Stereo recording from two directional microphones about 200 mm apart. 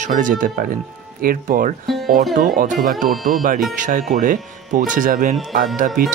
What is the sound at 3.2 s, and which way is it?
Speech, 45° right (ahead or behind).